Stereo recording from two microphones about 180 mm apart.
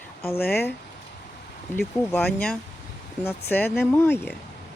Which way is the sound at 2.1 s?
5° left (ahead or behind).